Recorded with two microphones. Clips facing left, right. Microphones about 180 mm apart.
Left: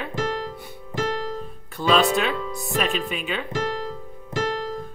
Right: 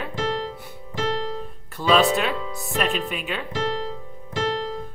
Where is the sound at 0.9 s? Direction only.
50° left (ahead or behind).